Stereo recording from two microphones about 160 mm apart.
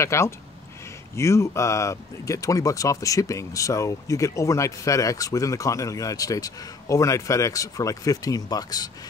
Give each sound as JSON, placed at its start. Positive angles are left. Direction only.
{"t": 0.0, "sound": "speech", "side_deg": 15}